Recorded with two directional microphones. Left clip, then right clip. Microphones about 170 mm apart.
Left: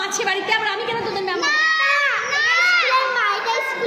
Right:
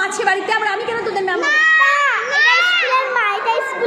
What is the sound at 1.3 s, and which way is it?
Children playing, 15° left (ahead or behind).